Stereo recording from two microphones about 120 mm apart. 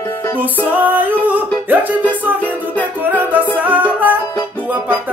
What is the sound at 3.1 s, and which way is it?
Music, 15° right (ahead or behind).